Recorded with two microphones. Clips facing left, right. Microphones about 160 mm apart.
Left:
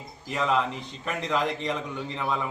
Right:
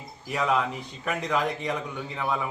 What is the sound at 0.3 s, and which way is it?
A man's voice, 10° right (ahead or behind).